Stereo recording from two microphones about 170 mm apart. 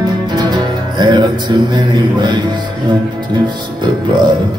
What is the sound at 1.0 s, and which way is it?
A man's voice, 25° right (ahead or behind).